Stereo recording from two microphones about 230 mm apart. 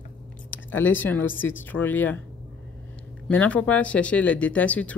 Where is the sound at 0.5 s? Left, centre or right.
Centre.